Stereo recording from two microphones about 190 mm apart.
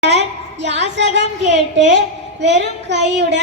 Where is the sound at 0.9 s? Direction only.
70° right (ahead or behind).